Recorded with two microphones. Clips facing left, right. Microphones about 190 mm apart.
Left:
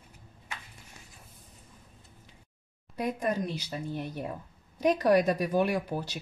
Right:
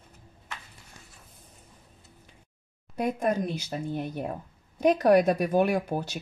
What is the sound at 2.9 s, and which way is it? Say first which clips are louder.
Speech: right 3 dB; 50° right (ahead or behind).